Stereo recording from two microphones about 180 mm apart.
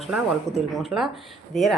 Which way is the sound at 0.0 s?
Centre (ahead or behind).